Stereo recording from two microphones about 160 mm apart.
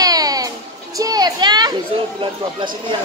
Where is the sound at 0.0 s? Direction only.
25° right (ahead or behind).